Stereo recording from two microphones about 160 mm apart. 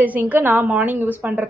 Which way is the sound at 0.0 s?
10° right (ahead or behind).